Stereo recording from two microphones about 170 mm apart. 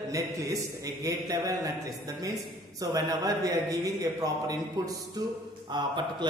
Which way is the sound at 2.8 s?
20° right (ahead or behind).